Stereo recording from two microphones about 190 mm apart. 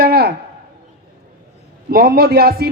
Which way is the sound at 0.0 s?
55° right (ahead or behind).